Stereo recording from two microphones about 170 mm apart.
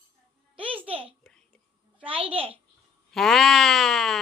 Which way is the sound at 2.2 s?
35° right (ahead or behind).